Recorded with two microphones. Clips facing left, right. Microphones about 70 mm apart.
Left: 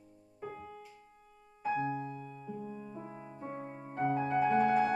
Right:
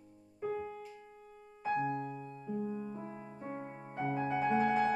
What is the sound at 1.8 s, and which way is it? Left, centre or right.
Music, centre.